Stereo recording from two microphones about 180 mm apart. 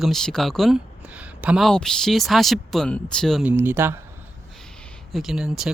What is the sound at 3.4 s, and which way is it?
Speech, 10° right (ahead or behind).